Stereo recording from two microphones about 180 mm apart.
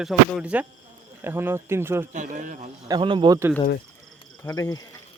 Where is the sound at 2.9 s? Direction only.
25° right (ahead or behind).